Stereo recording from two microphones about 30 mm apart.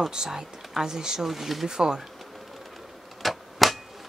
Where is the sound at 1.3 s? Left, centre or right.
Centre.